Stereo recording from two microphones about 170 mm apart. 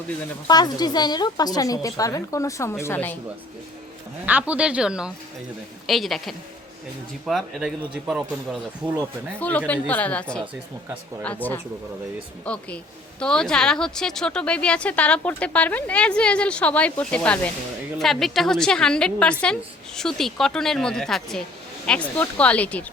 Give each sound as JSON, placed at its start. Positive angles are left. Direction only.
{"t": 0.4, "sound": "a woman's voice", "side_deg": 25}
{"t": 4.3, "sound": "a woman's voice", "side_deg": -10}
{"t": 9.4, "sound": "a woman's voice", "side_deg": 10}